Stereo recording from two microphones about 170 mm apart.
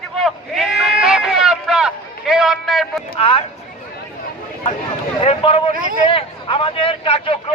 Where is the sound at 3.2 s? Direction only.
30° left (ahead or behind).